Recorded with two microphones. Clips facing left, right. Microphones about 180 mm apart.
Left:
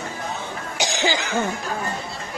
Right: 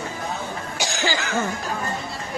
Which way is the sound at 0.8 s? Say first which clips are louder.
Left 3 dB; 20° left (ahead or behind).